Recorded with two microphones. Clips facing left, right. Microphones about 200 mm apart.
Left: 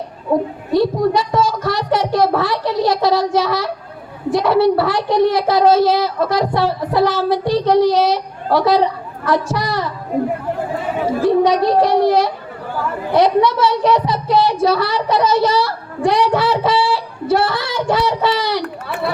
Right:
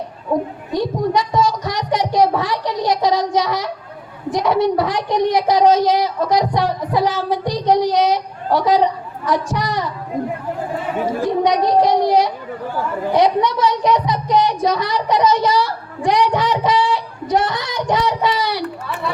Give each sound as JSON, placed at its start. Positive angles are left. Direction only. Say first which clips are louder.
{"t": 0.7, "sound": "a child's voice", "louder": "left 4 dB", "side_deg": -15}
{"t": 11.4, "sound": "a woman's voice", "louder": "left 1 dB", "side_deg": -15}